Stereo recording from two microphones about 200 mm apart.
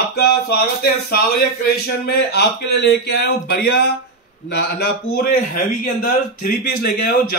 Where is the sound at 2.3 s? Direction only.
55° left (ahead or behind).